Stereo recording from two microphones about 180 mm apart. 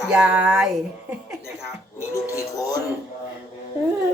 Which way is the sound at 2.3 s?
20° left (ahead or behind).